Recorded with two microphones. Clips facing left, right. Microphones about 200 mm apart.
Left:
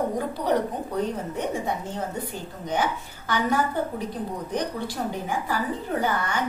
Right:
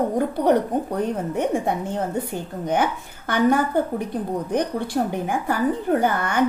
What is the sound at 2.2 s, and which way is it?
A woman's voice, 55° right (ahead or behind).